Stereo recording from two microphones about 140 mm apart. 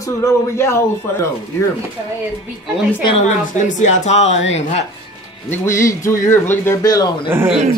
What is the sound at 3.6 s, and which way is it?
Speech, 60° left (ahead or behind).